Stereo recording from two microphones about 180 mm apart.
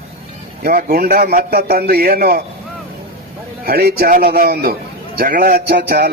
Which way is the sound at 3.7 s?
60° right (ahead or behind).